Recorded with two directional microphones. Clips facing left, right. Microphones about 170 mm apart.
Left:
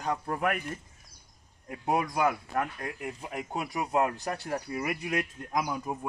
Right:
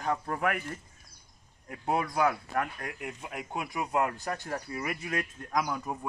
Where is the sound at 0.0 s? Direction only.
10° left (ahead or behind).